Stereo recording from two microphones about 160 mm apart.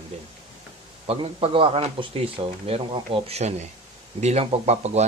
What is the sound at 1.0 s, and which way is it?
Speech, 35° right (ahead or behind).